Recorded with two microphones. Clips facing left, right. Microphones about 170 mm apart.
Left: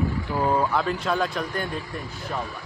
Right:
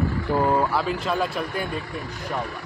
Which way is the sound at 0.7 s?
5° right (ahead or behind).